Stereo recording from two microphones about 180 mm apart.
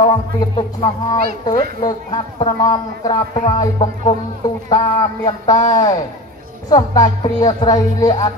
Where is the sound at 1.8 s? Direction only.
25° left (ahead or behind).